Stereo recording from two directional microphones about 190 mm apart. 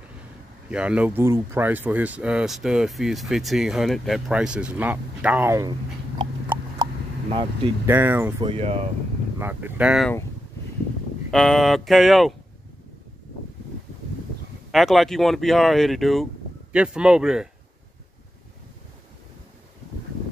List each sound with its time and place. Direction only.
0.7 s speech: 5° right (ahead or behind)
7.2 s speech: 30° right (ahead or behind)
7.8 s speech: 10° right (ahead or behind)
8.5 s speech: 30° right (ahead or behind)
9.4 s speech: 10° right (ahead or behind)
11.2 s speech: centre (ahead or behind)
14.7 s speech: centre (ahead or behind)